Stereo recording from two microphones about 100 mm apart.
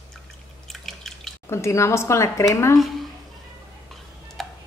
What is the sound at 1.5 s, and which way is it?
A woman's voice, 30° left (ahead or behind).